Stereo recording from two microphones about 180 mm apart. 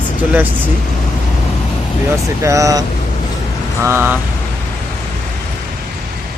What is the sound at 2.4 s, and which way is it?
Speech, 15° right (ahead or behind).